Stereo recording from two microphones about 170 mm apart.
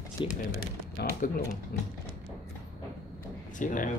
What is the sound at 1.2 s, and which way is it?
Speech, 50° left (ahead or behind).